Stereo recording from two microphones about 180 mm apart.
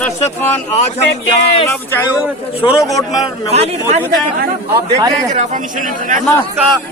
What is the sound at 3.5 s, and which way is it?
Speech, 35° right (ahead or behind).